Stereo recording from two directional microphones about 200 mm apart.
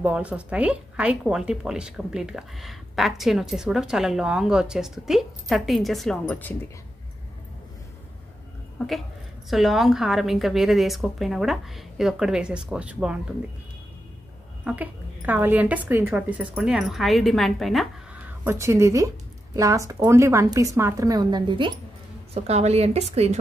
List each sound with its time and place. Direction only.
0.0 s speech: 5° right (ahead or behind)
8.7 s speech: centre (ahead or behind)
14.6 s a woman's voice: 5° right (ahead or behind); by 23.3 s 30° right (ahead or behind)